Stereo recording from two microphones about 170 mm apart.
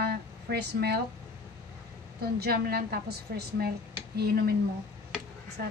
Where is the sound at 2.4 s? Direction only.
65° right (ahead or behind).